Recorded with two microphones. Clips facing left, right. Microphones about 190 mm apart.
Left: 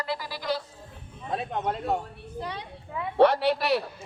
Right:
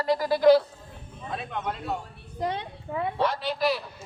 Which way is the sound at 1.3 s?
35° left (ahead or behind).